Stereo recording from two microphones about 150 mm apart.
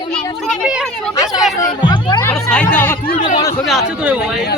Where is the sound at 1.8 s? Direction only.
30° left (ahead or behind).